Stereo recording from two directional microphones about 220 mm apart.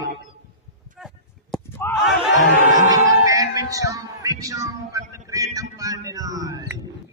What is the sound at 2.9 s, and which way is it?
Speech, 15° right (ahead or behind).